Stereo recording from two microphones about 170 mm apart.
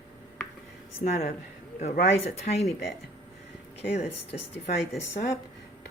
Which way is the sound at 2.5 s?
55° left (ahead or behind).